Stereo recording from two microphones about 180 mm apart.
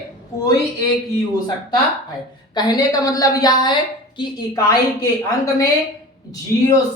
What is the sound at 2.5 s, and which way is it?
A man's voice, 25° left (ahead or behind).